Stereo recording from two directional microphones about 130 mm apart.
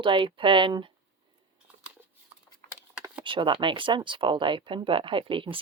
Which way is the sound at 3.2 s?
40° right (ahead or behind).